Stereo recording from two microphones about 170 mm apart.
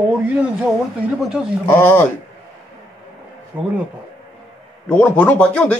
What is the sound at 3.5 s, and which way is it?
Speech, 10° right (ahead or behind).